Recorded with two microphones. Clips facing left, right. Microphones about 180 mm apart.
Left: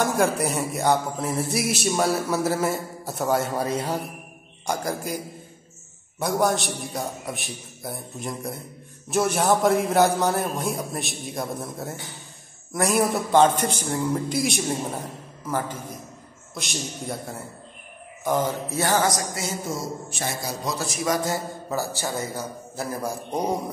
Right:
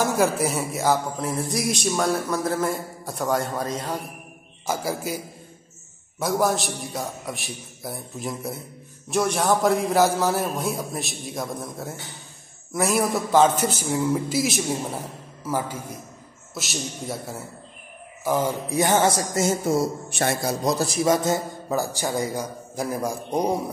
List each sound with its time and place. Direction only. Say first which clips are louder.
0.0 s music: right 1 dB; centre (ahead or behind)
4.6 s music: right 1 dB; 5° right (ahead or behind)
15.4 s a man's voice: right 1 dB; 10° right (ahead or behind)
16.5 s music: right 1 dB; 5° right (ahead or behind)
18.2 s a man's voice: right 1 dB; 10° right (ahead or behind); by 19.2 s 25° right (ahead or behind)
19.3 s speech: right 8 dB; 50° right (ahead or behind)
20.6 s a man's voice: right 5 dB; 40° right (ahead or behind); by 23.5 s 10° right (ahead or behind)